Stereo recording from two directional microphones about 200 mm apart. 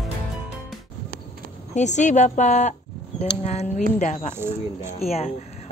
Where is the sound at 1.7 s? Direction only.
35° left (ahead or behind).